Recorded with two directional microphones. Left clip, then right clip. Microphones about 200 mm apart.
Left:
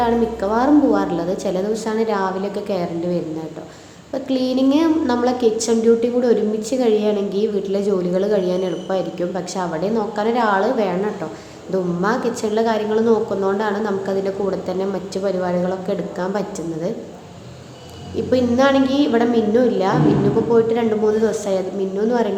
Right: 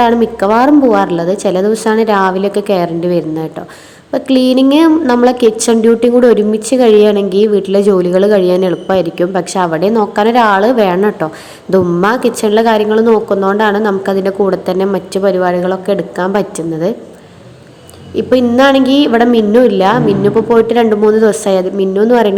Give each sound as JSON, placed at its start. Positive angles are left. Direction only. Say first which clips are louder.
{"t": 0.0, "sound": "a woman's voice", "louder": "right 8 dB", "side_deg": -45}
{"t": 18.2, "sound": "a woman's voice", "louder": "right 8 dB", "side_deg": -40}